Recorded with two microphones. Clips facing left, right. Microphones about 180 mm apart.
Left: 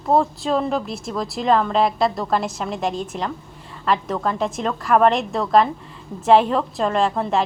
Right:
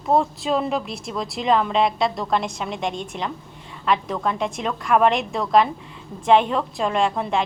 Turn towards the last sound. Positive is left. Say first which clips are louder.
# left 2 dB
turn(degrees=0)  # may be behind; listen again after turning